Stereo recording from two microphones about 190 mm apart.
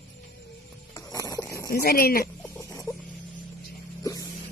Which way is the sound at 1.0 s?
20° left (ahead or behind).